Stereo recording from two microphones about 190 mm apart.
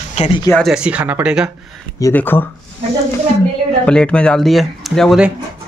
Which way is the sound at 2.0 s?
10° left (ahead or behind).